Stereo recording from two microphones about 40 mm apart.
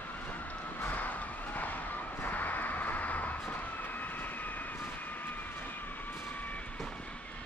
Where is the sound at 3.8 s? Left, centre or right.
Left.